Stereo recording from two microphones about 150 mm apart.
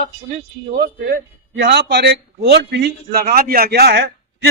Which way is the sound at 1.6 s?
90° right.